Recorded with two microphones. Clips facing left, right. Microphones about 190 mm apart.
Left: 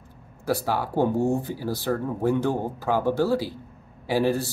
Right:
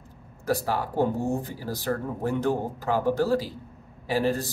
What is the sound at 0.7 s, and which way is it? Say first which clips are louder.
Speech: left 3 dB; 15° left (ahead or behind).